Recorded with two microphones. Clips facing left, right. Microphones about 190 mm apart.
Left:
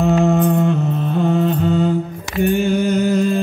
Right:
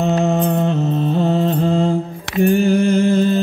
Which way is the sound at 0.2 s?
20° right (ahead or behind).